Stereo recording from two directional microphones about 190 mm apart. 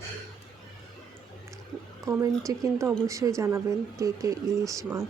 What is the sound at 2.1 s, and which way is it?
Speech, 15° right (ahead or behind).